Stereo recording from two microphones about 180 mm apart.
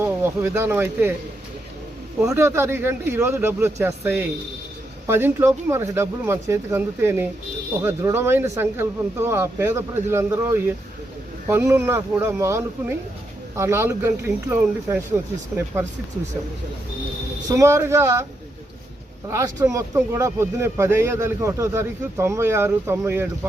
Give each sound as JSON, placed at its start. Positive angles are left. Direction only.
{"t": 0.0, "sound": "speech", "side_deg": -10}
{"t": 2.2, "sound": "speech", "side_deg": -15}
{"t": 17.6, "sound": "speech", "side_deg": -15}
{"t": 19.3, "sound": "speech", "side_deg": -15}